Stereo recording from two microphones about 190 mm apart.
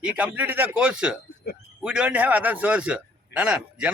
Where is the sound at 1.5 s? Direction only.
55° left (ahead or behind).